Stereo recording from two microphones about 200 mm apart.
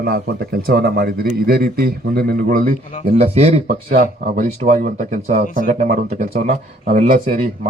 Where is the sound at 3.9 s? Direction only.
45° right (ahead or behind).